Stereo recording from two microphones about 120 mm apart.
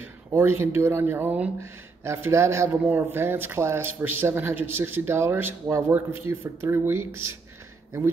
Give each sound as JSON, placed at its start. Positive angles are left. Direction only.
{"t": 0.0, "sound": "speech", "side_deg": -20}